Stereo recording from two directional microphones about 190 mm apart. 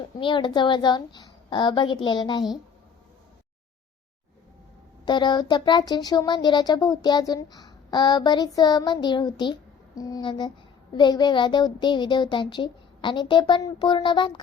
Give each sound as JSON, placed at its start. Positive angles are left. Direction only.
{"t": 0.2, "sound": "speech", "side_deg": 25}
{"t": 5.0, "sound": "speech", "side_deg": 25}